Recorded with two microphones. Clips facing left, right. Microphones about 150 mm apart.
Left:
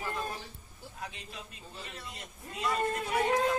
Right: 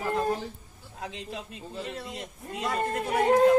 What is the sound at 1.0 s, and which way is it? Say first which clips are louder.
A man's voice: right 8 dB; 90° right.